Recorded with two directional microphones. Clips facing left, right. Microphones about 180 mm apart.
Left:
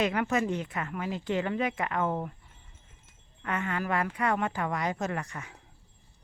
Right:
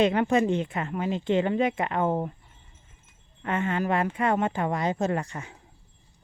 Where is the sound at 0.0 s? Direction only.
25° right (ahead or behind).